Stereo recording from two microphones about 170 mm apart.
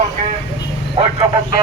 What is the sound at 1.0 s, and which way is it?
Speech, 35° right (ahead or behind).